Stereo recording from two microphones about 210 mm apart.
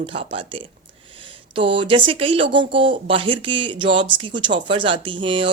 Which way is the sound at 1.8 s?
25° right (ahead or behind).